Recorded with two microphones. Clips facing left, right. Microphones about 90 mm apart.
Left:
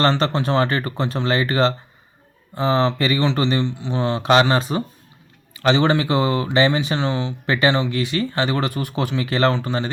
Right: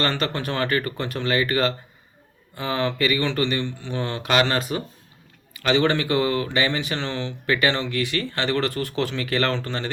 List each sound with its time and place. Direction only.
0.0 s speech: 25° left (ahead or behind)